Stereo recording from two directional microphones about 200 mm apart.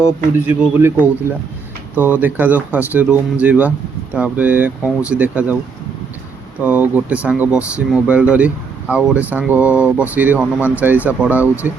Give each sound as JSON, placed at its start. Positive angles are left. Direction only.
{"t": 0.4, "sound": "speech", "side_deg": -10}
{"t": 6.6, "sound": "speech", "side_deg": -10}